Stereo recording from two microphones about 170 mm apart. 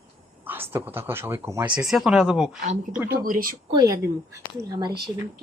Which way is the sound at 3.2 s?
55° right (ahead or behind).